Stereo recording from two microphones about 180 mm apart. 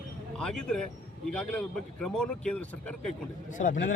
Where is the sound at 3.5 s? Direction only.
45° left (ahead or behind).